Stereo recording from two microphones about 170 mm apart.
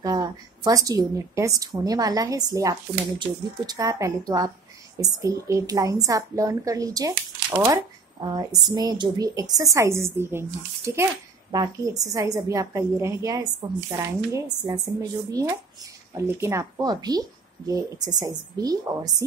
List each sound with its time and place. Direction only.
0.0 s a woman's voice: 20° right (ahead or behind)